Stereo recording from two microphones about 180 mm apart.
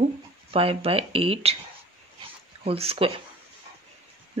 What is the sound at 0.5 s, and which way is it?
Speech, 30° right (ahead or behind).